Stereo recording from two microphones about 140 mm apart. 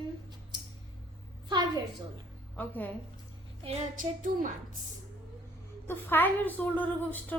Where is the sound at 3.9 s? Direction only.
70° right (ahead or behind).